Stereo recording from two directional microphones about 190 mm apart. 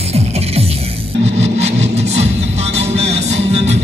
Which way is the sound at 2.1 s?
35° right (ahead or behind).